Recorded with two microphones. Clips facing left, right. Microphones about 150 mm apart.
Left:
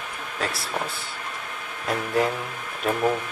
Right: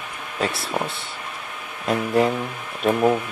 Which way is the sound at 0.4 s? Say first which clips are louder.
Right 5 dB; centre (ahead or behind).